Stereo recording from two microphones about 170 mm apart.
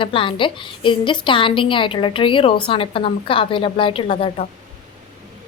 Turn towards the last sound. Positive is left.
turn(degrees=35)  # may be behind; listen again after turning